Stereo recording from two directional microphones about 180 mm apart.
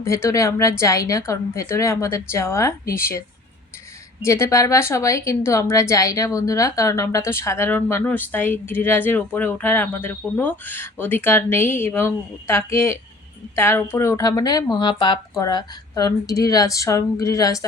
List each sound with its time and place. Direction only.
0.0 s a woman's voice: 15° left (ahead or behind)